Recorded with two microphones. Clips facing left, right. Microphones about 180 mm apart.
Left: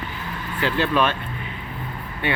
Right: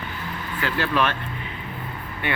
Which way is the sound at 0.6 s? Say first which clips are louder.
Left 3 dB; 20° left (ahead or behind).